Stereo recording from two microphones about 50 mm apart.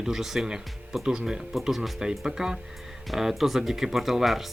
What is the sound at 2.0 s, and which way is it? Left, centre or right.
Speech, centre.